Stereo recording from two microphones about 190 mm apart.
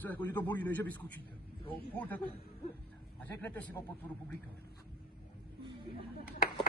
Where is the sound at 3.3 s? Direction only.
10° left (ahead or behind).